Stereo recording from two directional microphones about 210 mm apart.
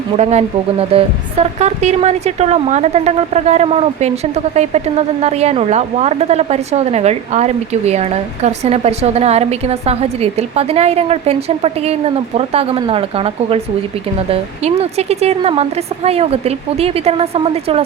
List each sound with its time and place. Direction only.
0.2 s a woman's voice: 30° right (ahead or behind)